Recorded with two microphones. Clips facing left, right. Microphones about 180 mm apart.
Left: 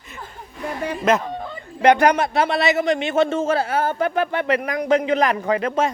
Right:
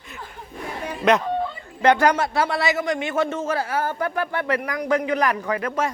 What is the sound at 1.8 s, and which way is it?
A man's voice, 15° left (ahead or behind).